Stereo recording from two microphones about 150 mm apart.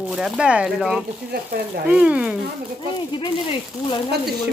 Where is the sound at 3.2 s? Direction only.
30° left (ahead or behind).